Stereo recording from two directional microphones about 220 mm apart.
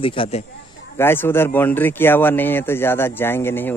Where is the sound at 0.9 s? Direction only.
10° left (ahead or behind).